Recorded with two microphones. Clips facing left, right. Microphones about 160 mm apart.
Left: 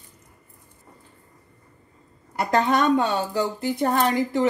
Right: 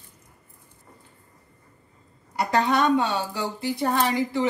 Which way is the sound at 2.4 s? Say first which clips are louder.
Left 1 dB; 50° left (ahead or behind).